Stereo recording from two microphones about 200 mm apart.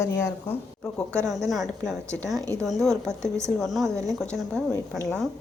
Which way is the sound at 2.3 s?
15° right (ahead or behind).